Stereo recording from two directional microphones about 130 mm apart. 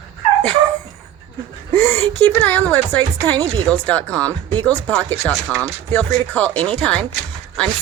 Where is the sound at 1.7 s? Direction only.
20° left (ahead or behind).